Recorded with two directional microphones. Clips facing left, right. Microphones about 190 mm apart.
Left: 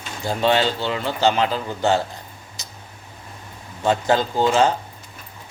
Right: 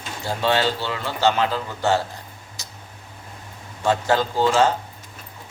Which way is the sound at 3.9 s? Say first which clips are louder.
Left 1 dB; 15° left (ahead or behind).